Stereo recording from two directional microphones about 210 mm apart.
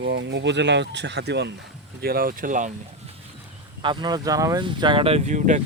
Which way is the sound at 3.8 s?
20° right (ahead or behind).